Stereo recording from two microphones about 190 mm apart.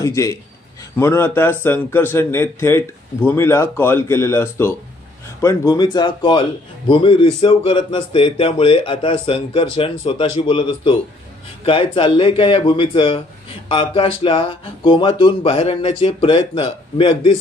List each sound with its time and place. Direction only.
0.0 s a man's voice: 15° left (ahead or behind)